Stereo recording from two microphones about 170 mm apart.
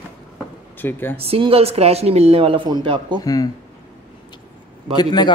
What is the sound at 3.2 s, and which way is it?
Speech, 20° left (ahead or behind).